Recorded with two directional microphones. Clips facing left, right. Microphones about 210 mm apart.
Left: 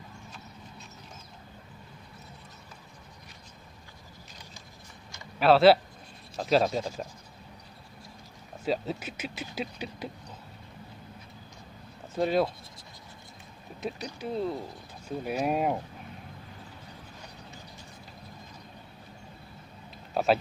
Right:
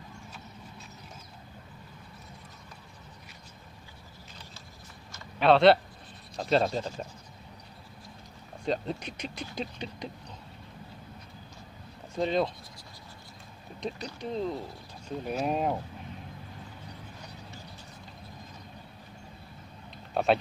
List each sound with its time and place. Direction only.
5.1 s a sound: 5° left (ahead or behind)
6.3 s speech: centre (ahead or behind)
8.6 s speech: 5° left (ahead or behind)
12.2 s speech: 5° left (ahead or behind)
13.7 s speech: 5° left (ahead or behind)
20.2 s speech: centre (ahead or behind)